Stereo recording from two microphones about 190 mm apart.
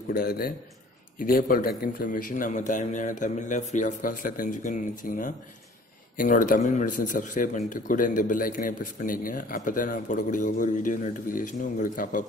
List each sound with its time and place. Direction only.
0.1 s speech: 55° left (ahead or behind)